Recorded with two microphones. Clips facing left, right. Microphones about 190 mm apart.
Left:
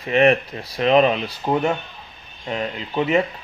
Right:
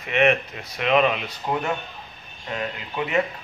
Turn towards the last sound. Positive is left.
turn(degrees=25)  # may be behind; listen again after turning